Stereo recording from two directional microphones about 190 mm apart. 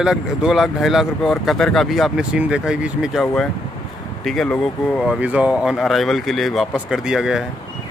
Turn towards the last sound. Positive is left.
turn(degrees=-5)  # may be behind; listen again after turning